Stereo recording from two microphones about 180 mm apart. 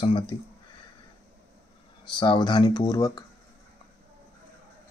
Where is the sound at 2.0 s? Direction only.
25° left (ahead or behind).